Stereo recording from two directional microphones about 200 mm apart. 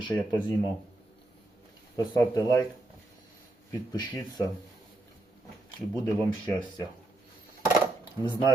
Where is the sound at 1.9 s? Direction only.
20° left (ahead or behind).